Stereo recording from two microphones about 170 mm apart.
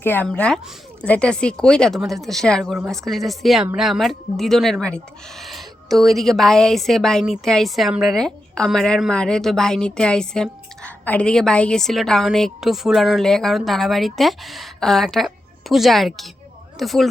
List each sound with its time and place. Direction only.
0.0 s speech: 10° left (ahead or behind)